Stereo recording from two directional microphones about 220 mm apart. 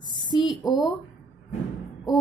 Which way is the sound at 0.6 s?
15° left (ahead or behind).